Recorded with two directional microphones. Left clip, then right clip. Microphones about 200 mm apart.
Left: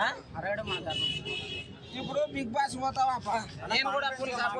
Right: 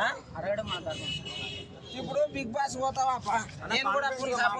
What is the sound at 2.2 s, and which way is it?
A man's voice, 20° right (ahead or behind).